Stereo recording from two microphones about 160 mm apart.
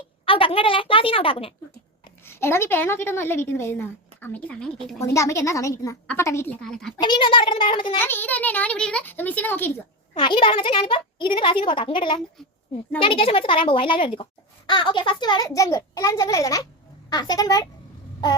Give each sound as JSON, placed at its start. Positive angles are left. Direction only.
{"t": 0.3, "sound": "a child's voice", "side_deg": 35}
{"t": 2.2, "sound": "a woman's voice", "side_deg": 15}
{"t": 4.9, "sound": "a child's voice", "side_deg": 20}
{"t": 6.6, "sound": "a child's voice", "side_deg": 5}
{"t": 7.0, "sound": "a child's voice", "side_deg": 30}
{"t": 7.9, "sound": "a woman's voice", "side_deg": 15}
{"t": 10.2, "sound": "a child's voice", "side_deg": 30}